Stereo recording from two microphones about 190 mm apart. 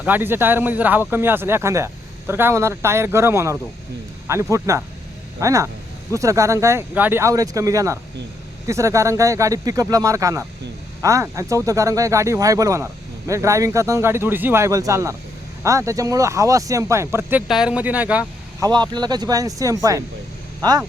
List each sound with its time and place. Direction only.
0.0 s speech: 10° right (ahead or behind)
18.6 s speech: 20° right (ahead or behind)